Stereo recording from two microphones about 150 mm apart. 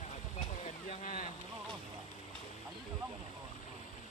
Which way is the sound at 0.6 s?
55° left (ahead or behind).